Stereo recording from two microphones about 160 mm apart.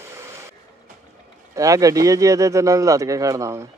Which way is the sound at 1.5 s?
20° right (ahead or behind).